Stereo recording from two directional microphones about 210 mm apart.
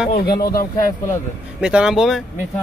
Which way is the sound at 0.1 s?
45° left (ahead or behind).